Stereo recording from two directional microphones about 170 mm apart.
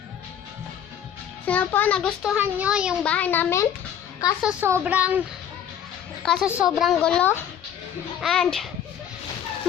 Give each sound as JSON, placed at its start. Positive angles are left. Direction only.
{"t": 1.5, "sound": "a child's voice", "side_deg": 10}
{"t": 2.3, "sound": "speech", "side_deg": -5}
{"t": 3.0, "sound": "a child's voice", "side_deg": 10}
{"t": 4.4, "sound": "speech", "side_deg": -10}
{"t": 6.2, "sound": "a woman's voice", "side_deg": 5}